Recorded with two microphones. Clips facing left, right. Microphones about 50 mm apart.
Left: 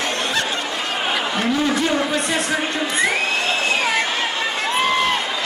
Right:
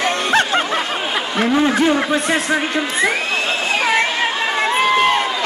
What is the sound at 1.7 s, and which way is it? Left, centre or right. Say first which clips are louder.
Speech: right 4 dB; centre.